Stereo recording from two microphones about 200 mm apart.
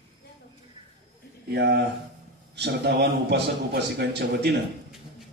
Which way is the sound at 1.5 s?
55° right (ahead or behind).